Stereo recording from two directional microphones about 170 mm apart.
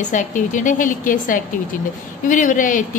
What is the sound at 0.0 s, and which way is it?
A woman's voice, 50° left (ahead or behind).